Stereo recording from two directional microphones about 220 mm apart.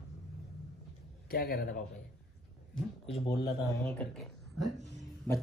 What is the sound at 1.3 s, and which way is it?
Speech, 45° left (ahead or behind).